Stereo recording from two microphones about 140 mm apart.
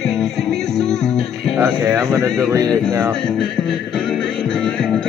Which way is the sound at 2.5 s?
20° right (ahead or behind).